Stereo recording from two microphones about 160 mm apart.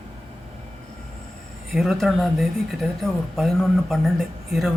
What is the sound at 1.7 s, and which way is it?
Speech, centre (ahead or behind).